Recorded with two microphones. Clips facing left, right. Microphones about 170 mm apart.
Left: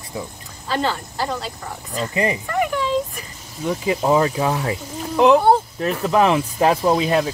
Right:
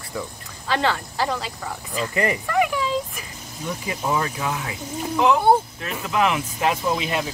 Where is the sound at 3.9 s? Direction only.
25° left (ahead or behind).